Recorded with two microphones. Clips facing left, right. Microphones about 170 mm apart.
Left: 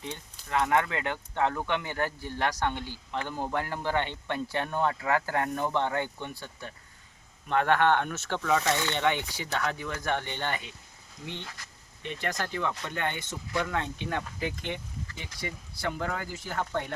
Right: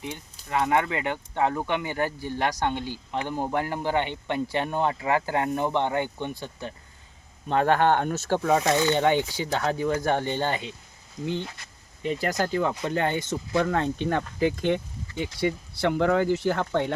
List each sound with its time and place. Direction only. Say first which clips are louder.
0.0 s speech: right 3 dB; 15° right (ahead or behind); by 10.7 s 30° right (ahead or behind)
12.0 s speech: right 7 dB; 35° right (ahead or behind)
13.7 s speech: right 7 dB; 45° right (ahead or behind)
15.4 s speech: right 11 dB; 65° right (ahead or behind)